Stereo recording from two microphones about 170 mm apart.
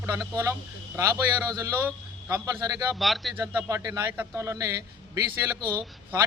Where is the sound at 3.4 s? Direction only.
15° right (ahead or behind).